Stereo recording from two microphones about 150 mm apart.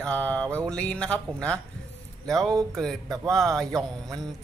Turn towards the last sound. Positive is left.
turn(degrees=0)  # may be behind; listen again after turning